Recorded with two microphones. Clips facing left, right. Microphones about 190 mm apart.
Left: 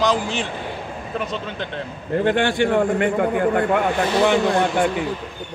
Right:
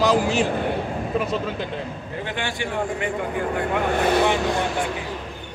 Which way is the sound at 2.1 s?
55° left (ahead or behind).